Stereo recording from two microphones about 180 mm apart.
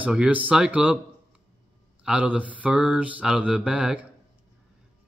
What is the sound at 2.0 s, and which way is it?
Mantra, 5° right (ahead or behind).